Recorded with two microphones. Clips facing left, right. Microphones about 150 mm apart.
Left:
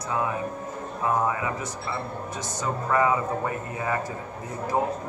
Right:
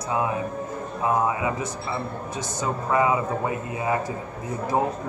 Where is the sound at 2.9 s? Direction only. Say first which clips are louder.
Right 1 dB; 15° right (ahead or behind).